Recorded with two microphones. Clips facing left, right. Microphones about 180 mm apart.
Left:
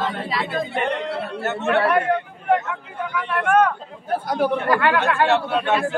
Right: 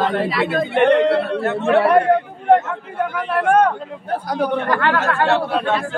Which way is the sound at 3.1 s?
40° right (ahead or behind).